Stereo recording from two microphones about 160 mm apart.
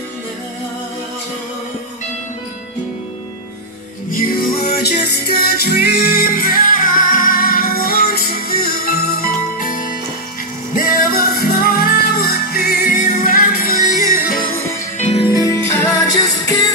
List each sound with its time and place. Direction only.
4.1 s music: 65° left (ahead or behind)
15.3 s music: 20° left (ahead or behind)